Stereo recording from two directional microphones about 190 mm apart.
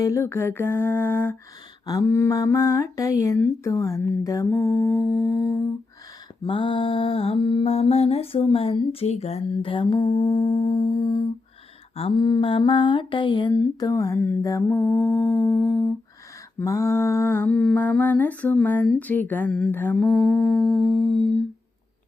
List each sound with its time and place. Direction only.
0.0 s lullaby: 15° left (ahead or behind)
6.4 s mantra: 25° left (ahead or behind)
11.9 s lullaby: 25° left (ahead or behind); by 21.3 s centre (ahead or behind)